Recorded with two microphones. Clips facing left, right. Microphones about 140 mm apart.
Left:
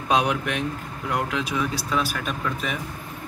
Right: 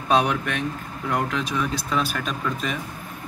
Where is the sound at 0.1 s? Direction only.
10° left (ahead or behind).